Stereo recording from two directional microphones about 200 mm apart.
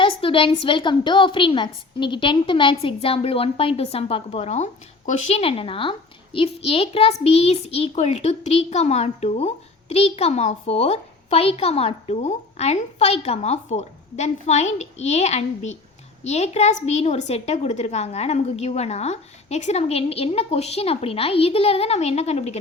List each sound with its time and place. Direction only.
0.0 s a woman's voice: 25° left (ahead or behind)